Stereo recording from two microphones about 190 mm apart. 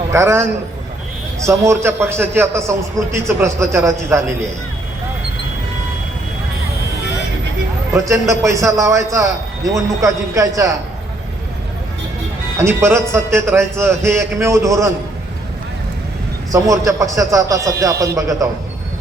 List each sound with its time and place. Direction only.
0.1 s a man's voice: 15° right (ahead or behind)
7.9 s a man's voice: 15° right (ahead or behind)
12.5 s a man's voice: 15° right (ahead or behind)
16.5 s a man's voice: 15° right (ahead or behind)